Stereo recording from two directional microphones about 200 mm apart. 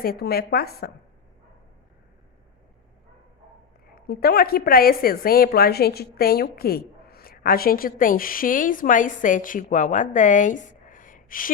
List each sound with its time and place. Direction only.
0.0 s a woman's voice: 50° left (ahead or behind)
3.9 s a woman's voice: 50° left (ahead or behind)